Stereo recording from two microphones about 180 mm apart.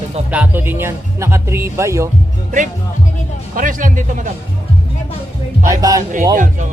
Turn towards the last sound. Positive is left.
turn(degrees=-45)  # may be behind; listen again after turning